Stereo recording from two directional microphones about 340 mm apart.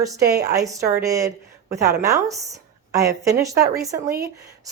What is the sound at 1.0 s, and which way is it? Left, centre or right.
A woman's voice, centre.